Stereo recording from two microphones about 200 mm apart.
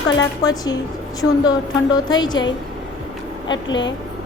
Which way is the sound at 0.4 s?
20° left (ahead or behind).